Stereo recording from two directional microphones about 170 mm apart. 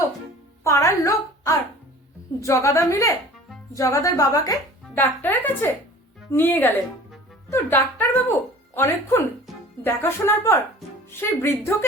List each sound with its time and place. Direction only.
0.6 s a woman's voice: 20° left (ahead or behind)
9.5 s music: centre (ahead or behind)
9.8 s speech: 15° left (ahead or behind)